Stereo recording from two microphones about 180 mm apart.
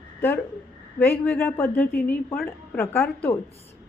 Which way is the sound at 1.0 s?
10° left (ahead or behind).